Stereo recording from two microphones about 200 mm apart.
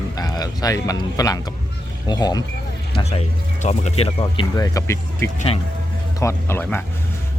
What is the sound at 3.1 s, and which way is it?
Speech, 35° left (ahead or behind).